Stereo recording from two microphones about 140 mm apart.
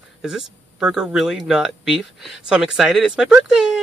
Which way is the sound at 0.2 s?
5° right (ahead or behind).